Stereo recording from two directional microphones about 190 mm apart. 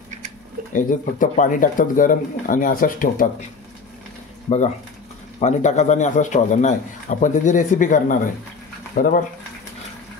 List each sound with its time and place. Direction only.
0.7 s speech: 40° left (ahead or behind)
5.4 s a man's voice: 40° left (ahead or behind)